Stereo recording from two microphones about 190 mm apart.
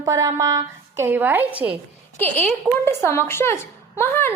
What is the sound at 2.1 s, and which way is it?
A woman's voice, 10° left (ahead or behind).